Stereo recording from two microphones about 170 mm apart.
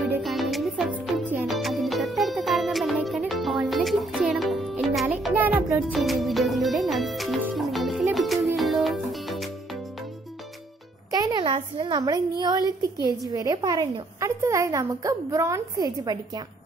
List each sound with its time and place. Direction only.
0.2 s music: centre (ahead or behind)
11.1 s a sound: 20° right (ahead or behind)
13.3 s a woman's voice: 20° right (ahead or behind)